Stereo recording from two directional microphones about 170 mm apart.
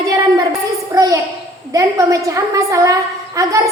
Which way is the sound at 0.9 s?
20° right (ahead or behind).